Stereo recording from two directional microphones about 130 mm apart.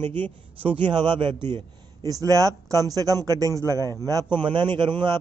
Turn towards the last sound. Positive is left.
turn(degrees=-40)  # may be behind; listen again after turning